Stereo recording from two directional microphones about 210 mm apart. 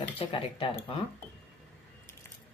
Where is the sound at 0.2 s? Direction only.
25° left (ahead or behind).